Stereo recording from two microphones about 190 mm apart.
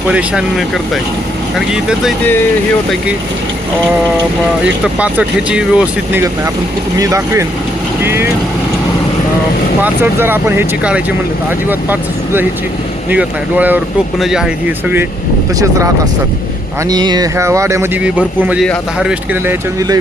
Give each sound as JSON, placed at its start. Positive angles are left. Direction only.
{"t": 0.1, "sound": "speech", "side_deg": -5}
{"t": 4.6, "sound": "speech", "side_deg": -5}
{"t": 9.8, "sound": "speech", "side_deg": -10}
{"t": 16.9, "sound": "speech", "side_deg": -20}